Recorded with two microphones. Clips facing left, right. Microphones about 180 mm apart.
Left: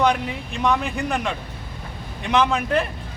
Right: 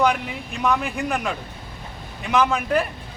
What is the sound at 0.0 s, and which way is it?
Speech, centre (ahead or behind).